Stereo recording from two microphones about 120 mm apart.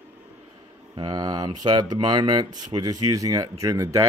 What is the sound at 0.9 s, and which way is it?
Speech, 35° right (ahead or behind).